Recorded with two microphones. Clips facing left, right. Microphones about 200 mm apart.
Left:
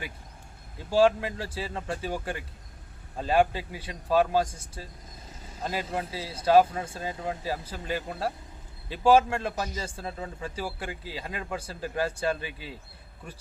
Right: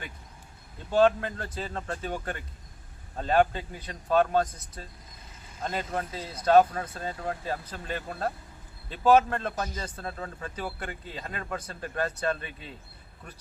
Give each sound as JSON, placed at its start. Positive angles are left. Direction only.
{"t": 0.9, "sound": "speech", "side_deg": 5}
{"t": 4.4, "sound": "speech", "side_deg": 30}
{"t": 5.6, "sound": "speech", "side_deg": 5}
{"t": 7.7, "sound": "speech", "side_deg": 5}